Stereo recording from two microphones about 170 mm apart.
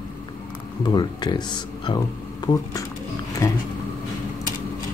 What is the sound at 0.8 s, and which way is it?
Speech, 25° left (ahead or behind).